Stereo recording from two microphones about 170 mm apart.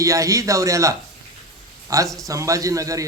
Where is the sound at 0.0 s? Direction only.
20° right (ahead or behind).